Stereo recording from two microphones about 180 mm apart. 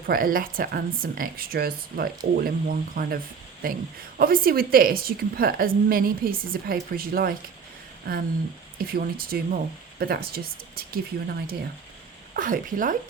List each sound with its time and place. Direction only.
0.1 s a woman's voice: 50° right (ahead or behind)